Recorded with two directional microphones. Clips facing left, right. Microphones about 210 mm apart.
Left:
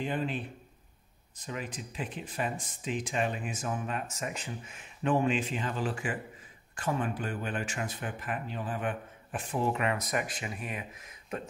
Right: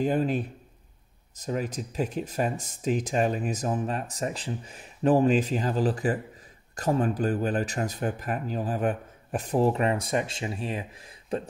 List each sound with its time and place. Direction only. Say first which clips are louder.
0.0 s speech: right 8 dB; 40° right (ahead or behind)